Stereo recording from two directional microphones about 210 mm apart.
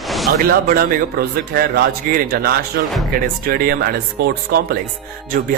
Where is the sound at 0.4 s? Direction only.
45° right (ahead or behind).